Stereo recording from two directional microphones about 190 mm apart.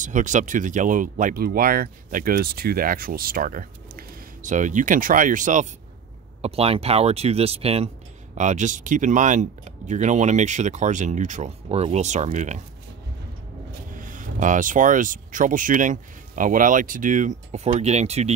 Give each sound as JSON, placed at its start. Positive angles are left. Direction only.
{"t": 0.0, "sound": "speech", "side_deg": -40}
{"t": 6.4, "sound": "speech", "side_deg": -30}
{"t": 13.9, "sound": "speech", "side_deg": -45}